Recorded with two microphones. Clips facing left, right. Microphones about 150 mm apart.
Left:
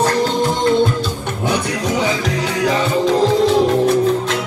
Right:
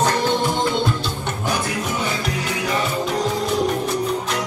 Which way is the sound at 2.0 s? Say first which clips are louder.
Left 6 dB; 90° left.